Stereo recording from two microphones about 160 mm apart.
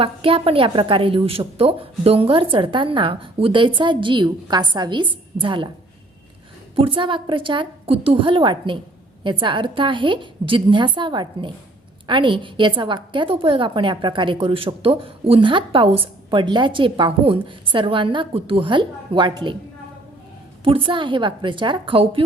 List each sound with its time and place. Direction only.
0.0 s a woman's voice: 35° right (ahead or behind)
6.7 s a woman's voice: 35° right (ahead or behind)
20.7 s a woman's voice: 35° right (ahead or behind)